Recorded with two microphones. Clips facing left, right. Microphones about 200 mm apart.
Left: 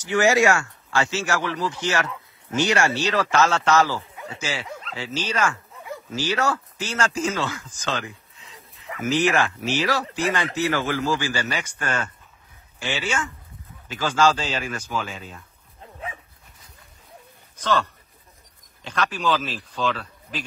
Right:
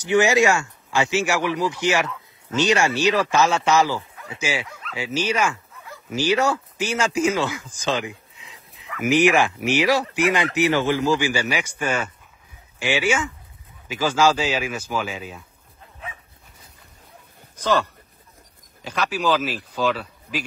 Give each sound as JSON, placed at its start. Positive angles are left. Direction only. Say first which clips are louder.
{"t": 0.0, "sound": "speech", "louder": "right 1 dB", "side_deg": -20}
{"t": 17.6, "sound": "speech", "louder": "right 2 dB", "side_deg": -10}
{"t": 18.9, "sound": "speech", "louder": "right 2 dB", "side_deg": -5}